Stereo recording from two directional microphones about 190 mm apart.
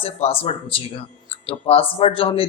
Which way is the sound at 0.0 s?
30° left (ahead or behind).